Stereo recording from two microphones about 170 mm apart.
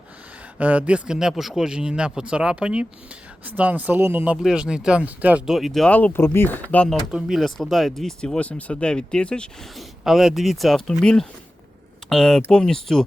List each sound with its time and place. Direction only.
0.6 s speech: 10° right (ahead or behind); by 6.9 s 10° left (ahead or behind)
7.1 s speech: 5° right (ahead or behind)